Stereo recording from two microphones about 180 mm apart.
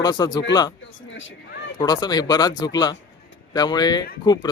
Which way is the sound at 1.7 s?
20° left (ahead or behind).